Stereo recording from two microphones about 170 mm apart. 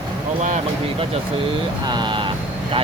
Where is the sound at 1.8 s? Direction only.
25° right (ahead or behind).